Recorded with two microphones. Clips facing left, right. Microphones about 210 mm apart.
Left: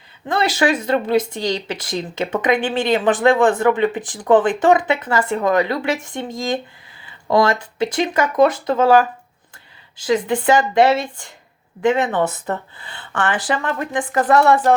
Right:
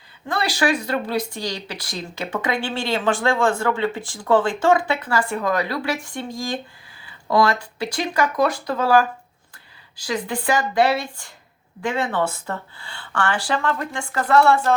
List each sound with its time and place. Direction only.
0.3 s speech: 20° left (ahead or behind)